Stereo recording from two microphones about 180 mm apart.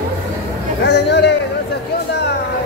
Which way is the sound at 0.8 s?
70° left (ahead or behind).